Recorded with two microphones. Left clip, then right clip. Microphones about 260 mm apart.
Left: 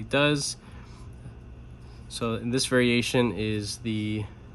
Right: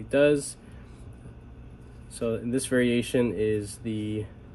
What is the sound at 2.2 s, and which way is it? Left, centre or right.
Speech, left.